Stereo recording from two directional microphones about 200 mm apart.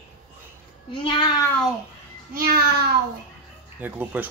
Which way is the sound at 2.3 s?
50° right (ahead or behind).